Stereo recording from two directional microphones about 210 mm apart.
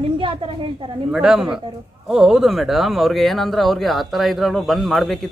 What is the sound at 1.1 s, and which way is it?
Speech, 5° right (ahead or behind).